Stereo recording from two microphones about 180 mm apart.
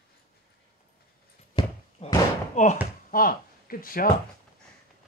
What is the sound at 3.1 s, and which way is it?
Speech, 50° left (ahead or behind).